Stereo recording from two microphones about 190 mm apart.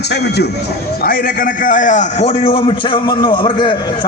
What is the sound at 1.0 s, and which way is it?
A man's voice, 45° left (ahead or behind).